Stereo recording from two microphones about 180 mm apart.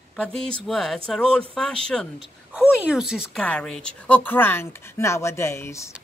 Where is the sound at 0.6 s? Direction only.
Centre (ahead or behind).